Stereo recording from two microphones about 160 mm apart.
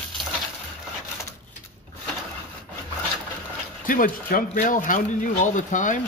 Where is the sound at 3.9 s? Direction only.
60° left (ahead or behind).